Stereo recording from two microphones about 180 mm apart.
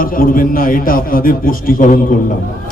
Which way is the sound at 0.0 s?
50° left (ahead or behind).